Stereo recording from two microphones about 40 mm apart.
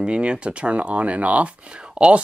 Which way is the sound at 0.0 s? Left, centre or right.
Right.